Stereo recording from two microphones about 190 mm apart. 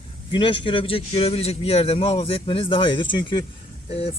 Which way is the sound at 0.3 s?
25° left (ahead or behind).